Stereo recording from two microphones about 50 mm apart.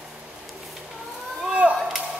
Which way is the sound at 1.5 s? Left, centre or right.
Right.